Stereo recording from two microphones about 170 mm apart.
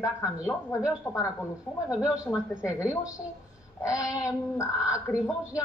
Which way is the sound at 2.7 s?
5° right (ahead or behind).